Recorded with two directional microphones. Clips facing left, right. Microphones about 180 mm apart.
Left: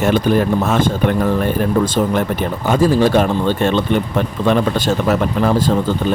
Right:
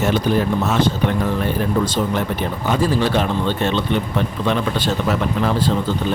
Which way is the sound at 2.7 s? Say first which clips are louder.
Left 5 dB; 45° left (ahead or behind).